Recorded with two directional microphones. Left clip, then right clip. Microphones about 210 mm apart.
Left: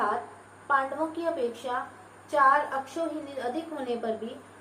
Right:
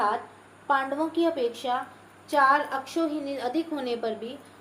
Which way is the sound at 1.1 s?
55° right (ahead or behind).